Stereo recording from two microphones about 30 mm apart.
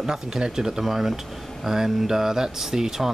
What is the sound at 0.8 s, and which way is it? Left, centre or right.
Speech, centre.